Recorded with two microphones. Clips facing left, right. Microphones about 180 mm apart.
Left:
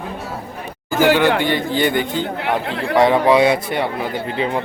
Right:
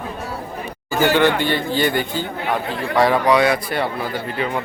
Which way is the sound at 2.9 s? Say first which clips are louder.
Left 3 dB; 20° left (ahead or behind).